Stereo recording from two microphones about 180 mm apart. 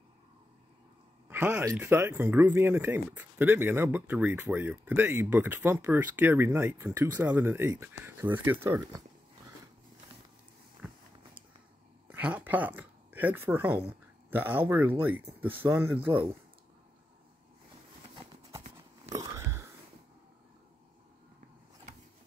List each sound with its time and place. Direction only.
1.3 s speech: 10° right (ahead or behind)
10.8 s vehicle: 10° right (ahead or behind)
12.1 s speech: 10° right (ahead or behind)
19.1 s a sound: 15° right (ahead or behind)